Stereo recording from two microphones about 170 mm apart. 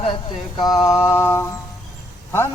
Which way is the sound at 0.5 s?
25° left (ahead or behind).